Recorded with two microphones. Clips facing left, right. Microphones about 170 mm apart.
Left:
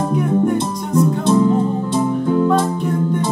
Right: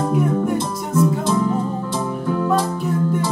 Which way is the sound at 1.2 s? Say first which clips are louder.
Left 5 dB; 25° left (ahead or behind).